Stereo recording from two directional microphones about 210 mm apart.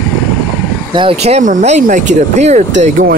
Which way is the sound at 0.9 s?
25° right (ahead or behind).